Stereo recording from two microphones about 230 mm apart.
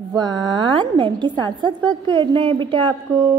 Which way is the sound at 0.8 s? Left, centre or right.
Right.